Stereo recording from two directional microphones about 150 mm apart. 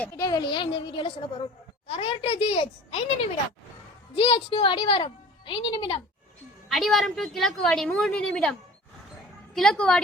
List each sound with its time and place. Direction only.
0.2 s a woman's voice: 25° left (ahead or behind)
4.1 s a woman's voice: 35° left (ahead or behind)
6.7 s a woman's voice: centre (ahead or behind)
9.6 s a woman's voice: 5° left (ahead or behind)